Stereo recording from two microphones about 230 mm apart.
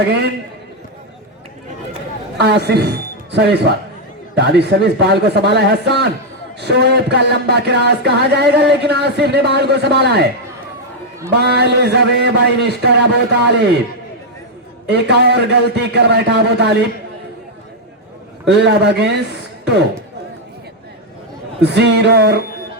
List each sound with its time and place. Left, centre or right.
2.4 s speech: right
11.3 s speech: right
14.8 s speech: right
18.4 s a man's voice: right
21.6 s speech: right